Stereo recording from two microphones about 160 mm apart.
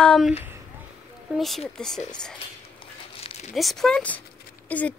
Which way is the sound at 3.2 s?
40° left (ahead or behind).